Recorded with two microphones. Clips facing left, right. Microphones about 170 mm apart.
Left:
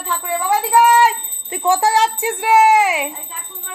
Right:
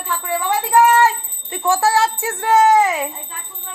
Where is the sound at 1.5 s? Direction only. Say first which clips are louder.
Left 1 dB; 20° left (ahead or behind).